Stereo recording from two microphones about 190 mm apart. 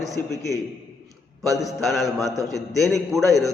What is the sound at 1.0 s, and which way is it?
A man's voice, centre (ahead or behind).